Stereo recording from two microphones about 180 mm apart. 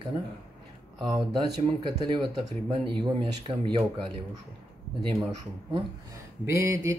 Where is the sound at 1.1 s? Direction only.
25° right (ahead or behind).